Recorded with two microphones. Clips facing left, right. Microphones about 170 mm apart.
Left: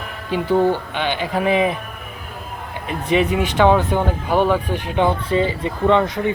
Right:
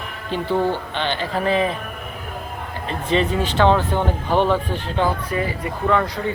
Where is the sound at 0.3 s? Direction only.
10° left (ahead or behind).